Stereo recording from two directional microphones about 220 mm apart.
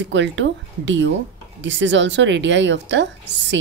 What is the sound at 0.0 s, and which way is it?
A woman's voice, 55° right (ahead or behind).